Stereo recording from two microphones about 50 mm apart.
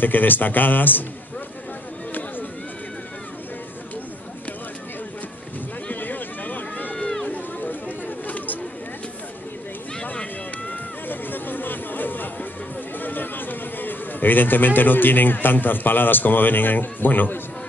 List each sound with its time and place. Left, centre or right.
0.0 s speech: left
5.9 s run: left
10.7 s music: left
13.0 s speech: left